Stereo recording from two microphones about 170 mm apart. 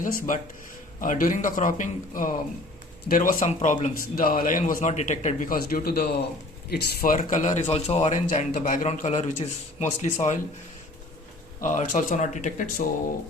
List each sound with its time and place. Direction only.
0.0 s a man's voice: 50° left (ahead or behind); by 7.1 s 70° left (ahead or behind)
7.2 s a man's voice: 45° left (ahead or behind)
11.6 s a man's voice: 50° left (ahead or behind)